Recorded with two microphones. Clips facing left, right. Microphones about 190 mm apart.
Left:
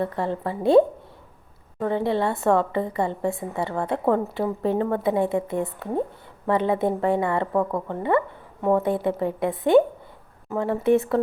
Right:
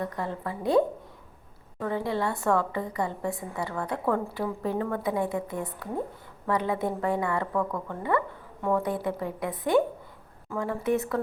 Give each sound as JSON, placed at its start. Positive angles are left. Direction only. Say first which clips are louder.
{"t": 0.0, "sound": "a woman's voice", "louder": "left 6 dB", "side_deg": 30}
{"t": 1.8, "sound": "a woman's voice", "louder": "left 5 dB", "side_deg": 25}